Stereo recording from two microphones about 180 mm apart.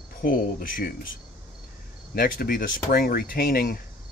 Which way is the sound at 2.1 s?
55° left (ahead or behind).